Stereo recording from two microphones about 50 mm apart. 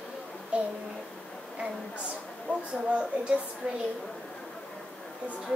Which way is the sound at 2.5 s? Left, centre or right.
Left.